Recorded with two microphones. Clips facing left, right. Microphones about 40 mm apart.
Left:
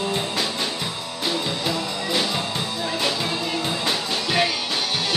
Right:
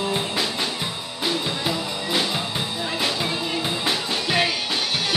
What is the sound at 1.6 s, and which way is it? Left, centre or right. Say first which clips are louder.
Music: left 1 dB; centre.